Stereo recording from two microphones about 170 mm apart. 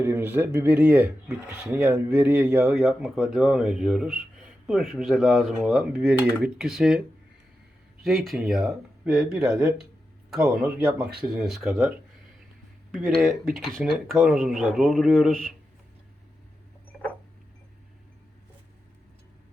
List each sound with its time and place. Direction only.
0.0 s speech: 15° right (ahead or behind)
8.0 s speech: centre (ahead or behind)
13.1 s speech: centre (ahead or behind)